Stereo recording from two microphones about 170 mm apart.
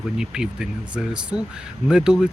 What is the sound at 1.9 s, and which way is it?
Speech, 5° right (ahead or behind).